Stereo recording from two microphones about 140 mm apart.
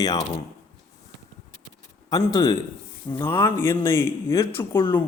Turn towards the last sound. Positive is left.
turn(degrees=15)  # may be behind; listen again after turning